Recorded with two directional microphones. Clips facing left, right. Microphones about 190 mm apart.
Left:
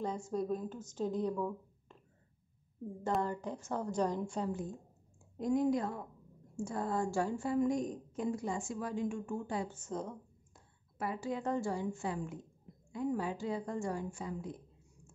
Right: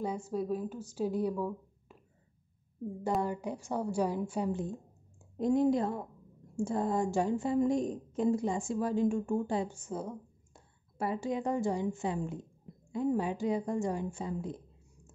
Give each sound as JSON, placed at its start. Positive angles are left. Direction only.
{"t": 0.0, "sound": "speech", "side_deg": -10}
{"t": 3.2, "sound": "a woman's voice", "side_deg": -10}
{"t": 5.4, "sound": "a woman's voice", "side_deg": -30}
{"t": 9.7, "sound": "a woman's voice", "side_deg": -10}
{"t": 10.5, "sound": "a woman's voice", "side_deg": -25}